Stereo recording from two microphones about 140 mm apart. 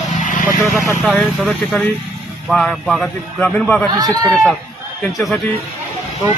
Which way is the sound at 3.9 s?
25° right (ahead or behind).